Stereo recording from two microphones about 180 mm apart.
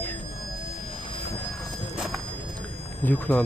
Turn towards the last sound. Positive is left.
turn(degrees=10)  # may be behind; listen again after turning